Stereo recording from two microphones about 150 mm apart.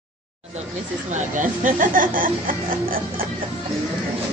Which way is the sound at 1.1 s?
60° right (ahead or behind).